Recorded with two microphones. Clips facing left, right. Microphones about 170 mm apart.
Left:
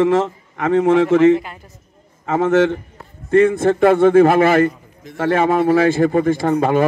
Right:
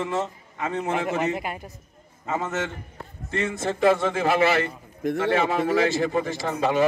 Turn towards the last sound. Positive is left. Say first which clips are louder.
# left 7 dB
turn(degrees=50)  # may be behind; listen again after turning